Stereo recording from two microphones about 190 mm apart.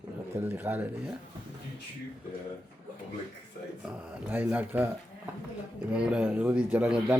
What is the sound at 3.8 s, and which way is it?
Speech, 5° right (ahead or behind).